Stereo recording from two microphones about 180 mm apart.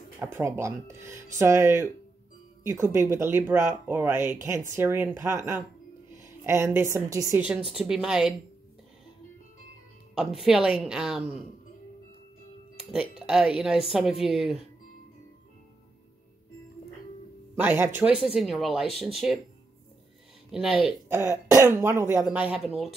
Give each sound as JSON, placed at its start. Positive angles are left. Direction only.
{"t": 0.2, "sound": "a woman's voice", "side_deg": -15}
{"t": 7.7, "sound": "speech", "side_deg": 0}
{"t": 10.1, "sound": "speech", "side_deg": 0}
{"t": 13.3, "sound": "speech", "side_deg": -5}
{"t": 17.6, "sound": "speech", "side_deg": -10}
{"t": 20.5, "sound": "speech", "side_deg": 0}
{"t": 21.1, "sound": "speech", "side_deg": -15}